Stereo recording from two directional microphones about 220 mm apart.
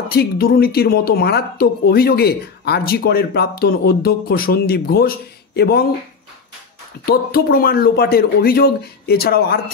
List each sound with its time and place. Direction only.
0.1 s speech: 45° left (ahead or behind)
7.1 s speech: 45° left (ahead or behind)